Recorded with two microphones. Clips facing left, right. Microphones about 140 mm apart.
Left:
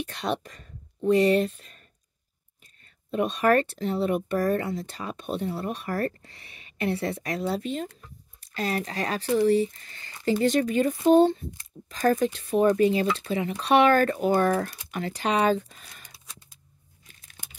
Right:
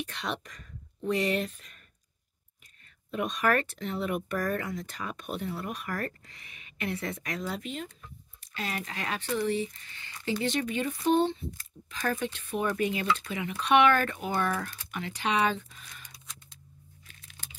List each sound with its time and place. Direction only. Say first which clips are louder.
0.0 s speech: left 6 dB; 35° left (ahead or behind)
3.1 s speech: left 5 dB; 30° left (ahead or behind)
17.4 s a sound: left 2 dB; 15° left (ahead or behind)